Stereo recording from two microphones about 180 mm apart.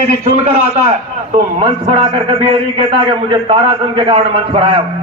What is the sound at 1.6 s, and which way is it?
A man's voice, 30° right (ahead or behind).